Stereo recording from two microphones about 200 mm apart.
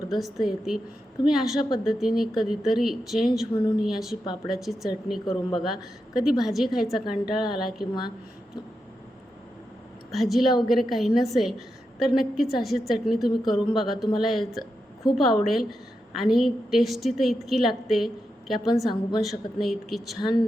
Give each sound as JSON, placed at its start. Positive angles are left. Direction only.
{"t": 0.1, "sound": "a woman's voice", "side_deg": 0}
{"t": 5.2, "sound": "speech", "side_deg": 20}
{"t": 5.5, "sound": "a woman's voice", "side_deg": 0}
{"t": 10.1, "sound": "a woman's voice", "side_deg": 0}